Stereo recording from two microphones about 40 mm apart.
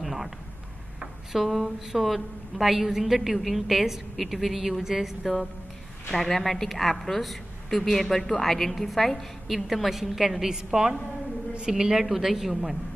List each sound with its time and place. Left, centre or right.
0.0 s a sound: centre
0.9 s a woman's voice: centre
6.1 s a woman's voice: centre
10.5 s a woman's voice: centre
12.0 s a woman's voice: centre